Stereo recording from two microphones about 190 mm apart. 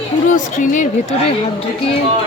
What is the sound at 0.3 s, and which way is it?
Speech, 45° left (ahead or behind).